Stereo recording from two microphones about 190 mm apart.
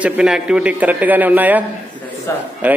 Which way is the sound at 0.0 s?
5° right (ahead or behind).